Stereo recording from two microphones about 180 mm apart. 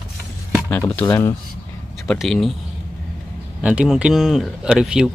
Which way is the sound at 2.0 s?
5° left (ahead or behind).